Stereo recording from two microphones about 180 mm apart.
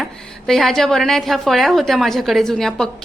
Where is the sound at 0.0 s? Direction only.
Centre (ahead or behind).